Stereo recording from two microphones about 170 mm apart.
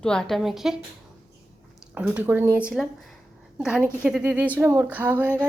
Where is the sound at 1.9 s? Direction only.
10° right (ahead or behind).